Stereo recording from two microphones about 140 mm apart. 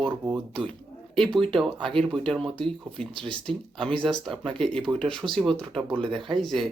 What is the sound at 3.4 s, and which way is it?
Speech, 5° left (ahead or behind).